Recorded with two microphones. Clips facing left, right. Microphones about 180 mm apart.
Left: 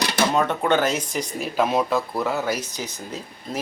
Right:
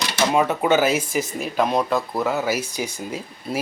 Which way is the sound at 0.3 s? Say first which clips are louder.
Right 4 dB; 5° right (ahead or behind).